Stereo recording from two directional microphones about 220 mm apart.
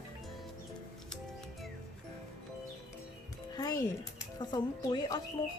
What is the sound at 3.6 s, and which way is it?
Speech, 15° left (ahead or behind).